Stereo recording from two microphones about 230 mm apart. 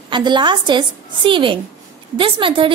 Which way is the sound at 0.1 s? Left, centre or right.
Centre.